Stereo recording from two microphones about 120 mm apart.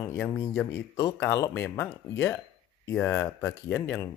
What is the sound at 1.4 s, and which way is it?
Speech, 25° left (ahead or behind).